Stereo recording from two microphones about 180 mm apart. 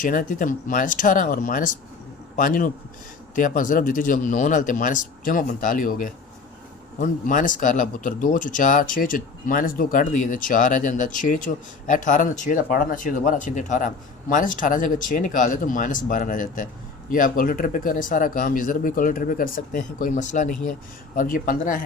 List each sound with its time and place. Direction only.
0.0 s speech: 50° left (ahead or behind)